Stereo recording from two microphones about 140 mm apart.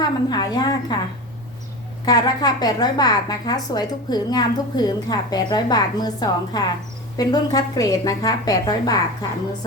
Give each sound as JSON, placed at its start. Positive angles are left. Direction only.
{"t": 0.0, "sound": "a woman's voice", "side_deg": 30}
{"t": 2.0, "sound": "a woman's voice", "side_deg": 30}